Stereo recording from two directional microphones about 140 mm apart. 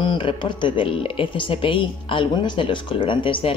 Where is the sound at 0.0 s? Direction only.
35° left (ahead or behind).